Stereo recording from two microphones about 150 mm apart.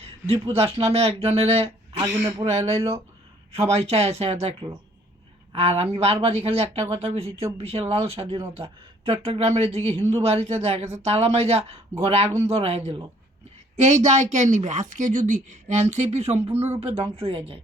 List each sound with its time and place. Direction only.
0.5 s a woman's voice: 40° right (ahead or behind)
5.5 s a woman's voice: 40° right (ahead or behind)